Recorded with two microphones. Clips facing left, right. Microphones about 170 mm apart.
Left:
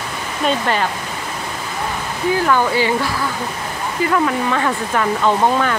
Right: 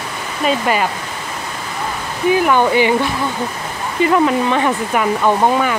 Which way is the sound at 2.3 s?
15° right (ahead or behind).